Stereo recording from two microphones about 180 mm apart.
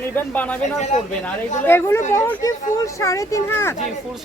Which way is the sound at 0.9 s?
40° left (ahead or behind).